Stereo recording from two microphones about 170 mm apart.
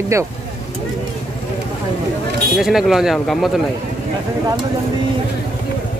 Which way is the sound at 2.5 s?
Centre (ahead or behind).